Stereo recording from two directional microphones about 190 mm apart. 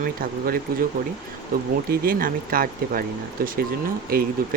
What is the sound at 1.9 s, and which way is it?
Speech, 50° right (ahead or behind).